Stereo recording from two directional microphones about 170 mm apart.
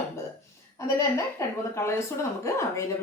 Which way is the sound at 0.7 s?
15° left (ahead or behind).